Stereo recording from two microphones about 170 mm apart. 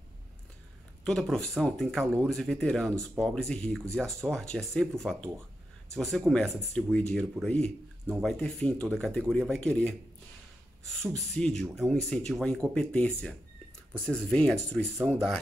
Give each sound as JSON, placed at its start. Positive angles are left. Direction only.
{"t": 1.0, "sound": "speech", "side_deg": 5}